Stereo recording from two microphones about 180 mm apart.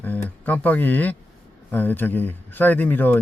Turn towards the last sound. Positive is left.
turn(degrees=10)  # may be behind; listen again after turning